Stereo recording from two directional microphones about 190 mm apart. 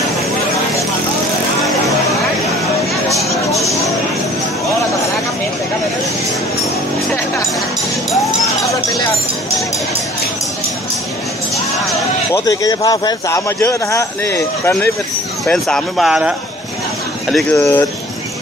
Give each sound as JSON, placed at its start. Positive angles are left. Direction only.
{"t": 8.2, "sound": "a sound", "side_deg": 15}
{"t": 12.4, "sound": "a man's voice", "side_deg": 20}
{"t": 15.4, "sound": "a man's voice", "side_deg": 5}